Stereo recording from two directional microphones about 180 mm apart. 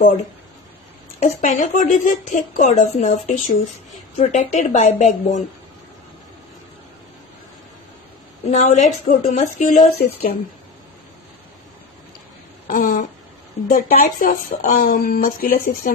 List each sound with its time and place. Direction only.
1.2 s speech: 45° left (ahead or behind)
8.5 s speech: 40° left (ahead or behind)
12.6 s a sound: 50° left (ahead or behind)
13.7 s speech: 55° left (ahead or behind)